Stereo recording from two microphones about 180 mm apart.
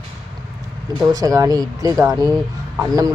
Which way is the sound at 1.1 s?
20° right (ahead or behind).